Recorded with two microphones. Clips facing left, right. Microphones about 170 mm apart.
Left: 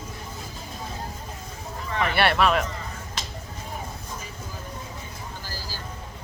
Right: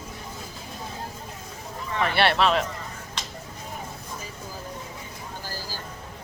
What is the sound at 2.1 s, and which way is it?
Speech, 30° right (ahead or behind).